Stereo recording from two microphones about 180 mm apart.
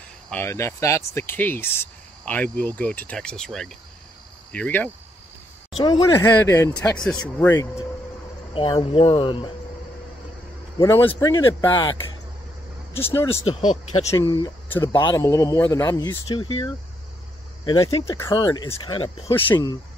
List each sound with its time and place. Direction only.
0.3 s speech: 15° left (ahead or behind)
5.8 s speech: 25° left (ahead or behind)
8.5 s speech: 30° left (ahead or behind)
10.8 s speech: 10° left (ahead or behind)
13.1 s speech: 15° left (ahead or behind)
18.0 s speech: 15° left (ahead or behind)